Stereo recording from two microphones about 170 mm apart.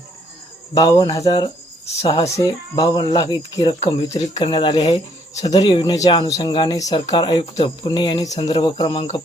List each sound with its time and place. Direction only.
0.7 s speech: 25° left (ahead or behind)
3.8 s speech: 40° left (ahead or behind)